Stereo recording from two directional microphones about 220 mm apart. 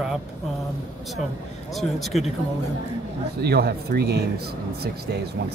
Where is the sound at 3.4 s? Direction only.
45° right (ahead or behind).